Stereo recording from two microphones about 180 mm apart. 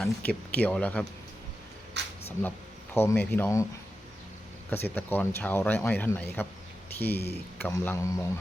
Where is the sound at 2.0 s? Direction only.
75° right (ahead or behind).